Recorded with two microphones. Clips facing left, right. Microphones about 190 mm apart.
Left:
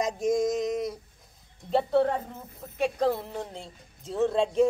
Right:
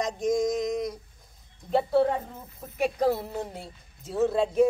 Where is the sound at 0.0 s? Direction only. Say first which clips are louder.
Even; 5° left (ahead or behind).